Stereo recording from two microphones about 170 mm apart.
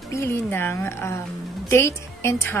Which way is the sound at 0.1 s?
15° left (ahead or behind).